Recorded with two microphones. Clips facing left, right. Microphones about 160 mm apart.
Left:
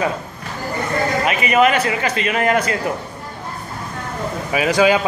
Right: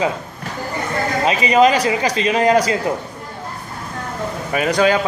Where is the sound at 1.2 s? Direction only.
25° right (ahead or behind).